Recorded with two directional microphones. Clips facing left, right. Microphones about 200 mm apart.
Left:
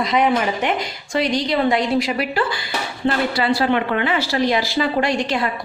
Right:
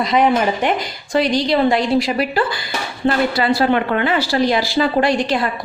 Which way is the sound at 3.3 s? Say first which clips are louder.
Right 2 dB; 45° right (ahead or behind).